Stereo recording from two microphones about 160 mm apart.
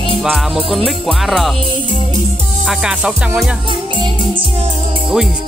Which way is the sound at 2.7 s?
5° right (ahead or behind).